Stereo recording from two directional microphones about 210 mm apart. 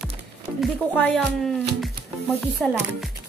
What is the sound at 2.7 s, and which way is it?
Speech, 10° right (ahead or behind).